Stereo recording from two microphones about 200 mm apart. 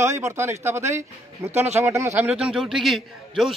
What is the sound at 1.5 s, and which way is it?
Speech, 35° right (ahead or behind).